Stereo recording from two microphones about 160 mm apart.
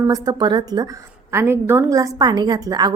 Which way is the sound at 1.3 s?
15° right (ahead or behind).